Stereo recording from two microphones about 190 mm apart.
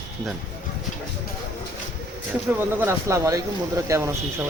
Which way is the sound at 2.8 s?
15° right (ahead or behind).